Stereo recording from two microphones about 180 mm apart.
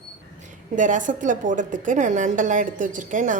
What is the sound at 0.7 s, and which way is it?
A woman's voice, 45° right (ahead or behind).